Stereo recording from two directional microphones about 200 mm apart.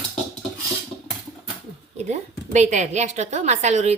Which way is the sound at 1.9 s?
35° right (ahead or behind).